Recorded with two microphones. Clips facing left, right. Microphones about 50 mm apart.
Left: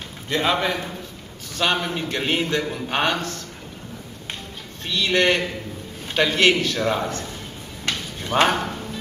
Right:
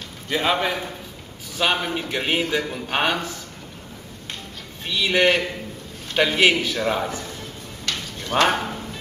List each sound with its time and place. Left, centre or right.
0.3 s a man's voice: centre
4.8 s a man's voice: centre
7.9 s a sound: left
8.5 s speech: centre